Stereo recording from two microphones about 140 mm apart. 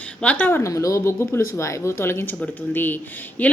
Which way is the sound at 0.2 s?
10° left (ahead or behind).